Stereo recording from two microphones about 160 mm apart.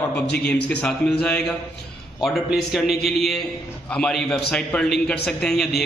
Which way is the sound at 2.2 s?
Centre (ahead or behind).